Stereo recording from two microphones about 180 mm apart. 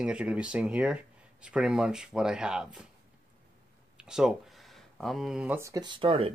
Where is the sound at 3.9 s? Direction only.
5° right (ahead or behind).